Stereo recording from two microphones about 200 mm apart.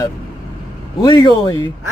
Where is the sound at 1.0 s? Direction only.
20° left (ahead or behind).